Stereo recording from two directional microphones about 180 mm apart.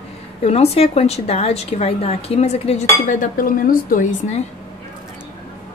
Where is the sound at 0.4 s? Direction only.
35° left (ahead or behind).